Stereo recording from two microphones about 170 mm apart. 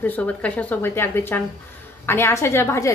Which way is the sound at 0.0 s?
10° left (ahead or behind).